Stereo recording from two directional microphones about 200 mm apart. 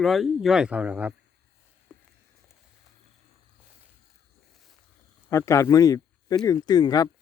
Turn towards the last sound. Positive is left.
turn(degrees=20)  # may be behind; listen again after turning